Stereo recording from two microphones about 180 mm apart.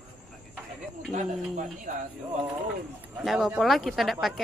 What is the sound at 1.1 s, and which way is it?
Speech, 45° right (ahead or behind).